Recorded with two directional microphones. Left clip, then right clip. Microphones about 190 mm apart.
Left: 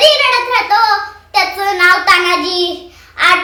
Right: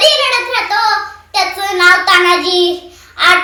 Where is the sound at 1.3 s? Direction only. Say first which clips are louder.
Left 1 dB; 20° left (ahead or behind).